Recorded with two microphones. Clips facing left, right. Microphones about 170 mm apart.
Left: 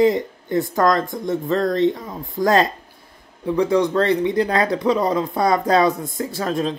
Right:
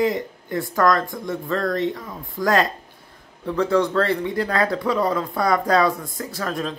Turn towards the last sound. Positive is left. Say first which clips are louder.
# left 4 dB
turn(degrees=25)  # may be behind; listen again after turning